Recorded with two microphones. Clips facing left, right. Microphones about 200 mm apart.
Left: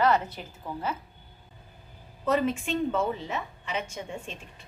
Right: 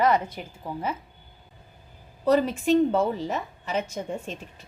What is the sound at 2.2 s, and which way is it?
A woman's voice, 35° right (ahead or behind).